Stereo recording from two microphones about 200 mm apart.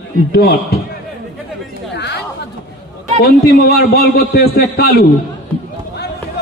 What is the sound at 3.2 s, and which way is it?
A man's voice, 50° left (ahead or behind).